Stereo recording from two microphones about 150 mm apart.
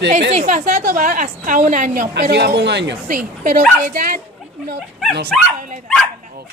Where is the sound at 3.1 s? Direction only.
60° right (ahead or behind).